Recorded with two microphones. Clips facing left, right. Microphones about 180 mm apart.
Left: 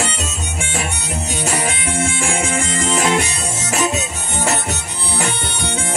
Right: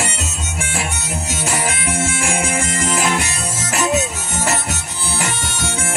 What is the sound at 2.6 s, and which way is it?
Music, 25° left (ahead or behind).